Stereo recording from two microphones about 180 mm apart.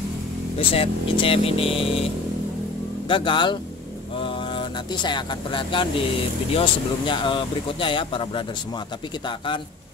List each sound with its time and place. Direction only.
0.6 s speech: 30° left (ahead or behind)
3.1 s speech: 25° left (ahead or behind)